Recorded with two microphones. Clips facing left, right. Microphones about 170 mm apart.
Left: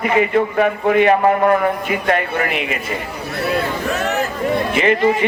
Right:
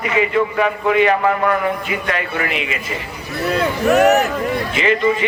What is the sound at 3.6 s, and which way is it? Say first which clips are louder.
Speech: right 8 dB; 75° right (ahead or behind).